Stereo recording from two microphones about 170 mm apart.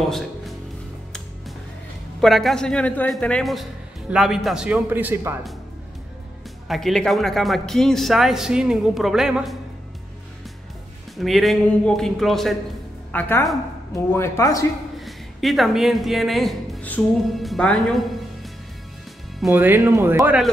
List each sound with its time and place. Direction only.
0.0 s music: centre (ahead or behind)
2.1 s speech: centre (ahead or behind)
6.7 s speech: centre (ahead or behind)
11.1 s a woman's voice: centre (ahead or behind); by 14.7 s 20° left (ahead or behind)
15.0 s speech: centre (ahead or behind)
19.5 s speech: 10° right (ahead or behind)